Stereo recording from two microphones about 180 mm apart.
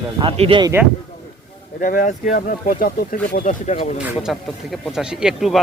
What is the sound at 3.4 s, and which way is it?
Speech, 35° left (ahead or behind).